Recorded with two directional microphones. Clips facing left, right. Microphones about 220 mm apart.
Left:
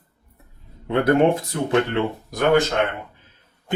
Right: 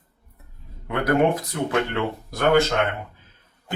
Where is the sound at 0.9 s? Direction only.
25° left (ahead or behind).